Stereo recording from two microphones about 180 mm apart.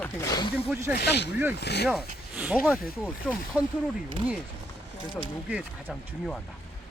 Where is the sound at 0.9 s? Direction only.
70° left (ahead or behind).